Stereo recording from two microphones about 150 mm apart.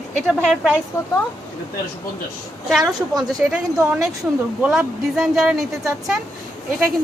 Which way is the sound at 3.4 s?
10° right (ahead or behind).